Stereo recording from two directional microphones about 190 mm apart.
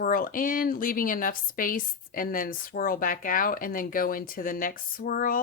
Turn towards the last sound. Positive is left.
turn(degrees=50)  # may be behind; listen again after turning